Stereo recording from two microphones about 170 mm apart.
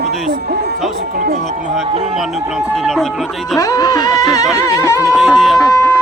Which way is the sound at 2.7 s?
Centre (ahead or behind).